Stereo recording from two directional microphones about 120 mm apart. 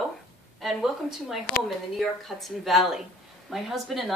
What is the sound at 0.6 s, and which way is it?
Speech, centre (ahead or behind).